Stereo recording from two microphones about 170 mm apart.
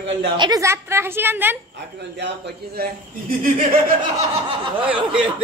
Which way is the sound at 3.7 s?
55° right (ahead or behind).